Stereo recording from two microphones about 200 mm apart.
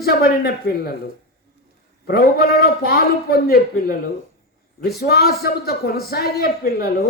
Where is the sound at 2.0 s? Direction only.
50° left (ahead or behind).